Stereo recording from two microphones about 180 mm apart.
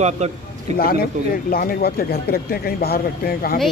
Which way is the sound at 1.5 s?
55° left (ahead or behind).